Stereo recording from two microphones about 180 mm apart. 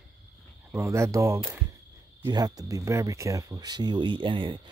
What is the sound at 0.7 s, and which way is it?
Speech, 15° right (ahead or behind).